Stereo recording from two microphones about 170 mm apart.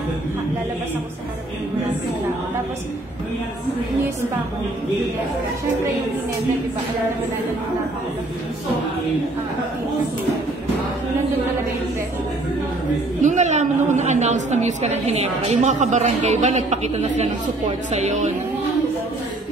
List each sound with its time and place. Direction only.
13.2 s a woman's voice: 45° right (ahead or behind)